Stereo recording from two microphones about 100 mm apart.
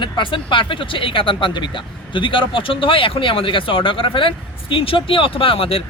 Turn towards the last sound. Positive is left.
turn(degrees=65)  # may be behind; listen again after turning